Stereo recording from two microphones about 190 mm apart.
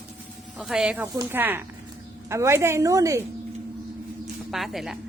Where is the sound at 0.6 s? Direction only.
5° right (ahead or behind).